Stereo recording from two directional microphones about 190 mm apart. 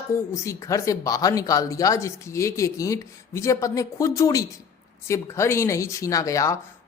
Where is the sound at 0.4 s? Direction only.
15° left (ahead or behind).